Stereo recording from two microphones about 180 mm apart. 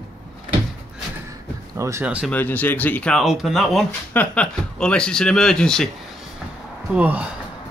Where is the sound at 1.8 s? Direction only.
15° right (ahead or behind).